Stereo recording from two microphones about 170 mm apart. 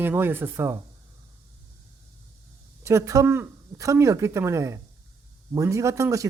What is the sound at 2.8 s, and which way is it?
Speech, 15° right (ahead or behind).